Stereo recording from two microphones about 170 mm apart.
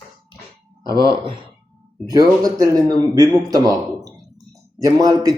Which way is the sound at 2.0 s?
20° right (ahead or behind).